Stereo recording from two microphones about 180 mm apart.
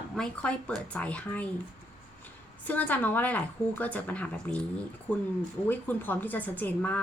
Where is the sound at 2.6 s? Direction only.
10° left (ahead or behind).